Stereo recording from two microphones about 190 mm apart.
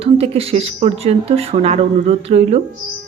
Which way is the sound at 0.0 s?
30° right (ahead or behind).